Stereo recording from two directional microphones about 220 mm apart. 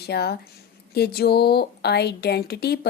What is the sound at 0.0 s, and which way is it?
A woman's voice, 45° left (ahead or behind).